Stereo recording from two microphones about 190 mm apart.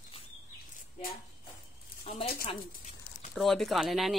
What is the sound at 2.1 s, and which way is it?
Speech, 35° left (ahead or behind).